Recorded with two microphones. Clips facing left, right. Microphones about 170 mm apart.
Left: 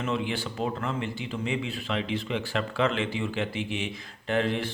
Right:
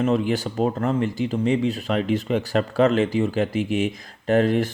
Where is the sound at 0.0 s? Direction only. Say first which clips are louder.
Right 8 dB; 40° right (ahead or behind).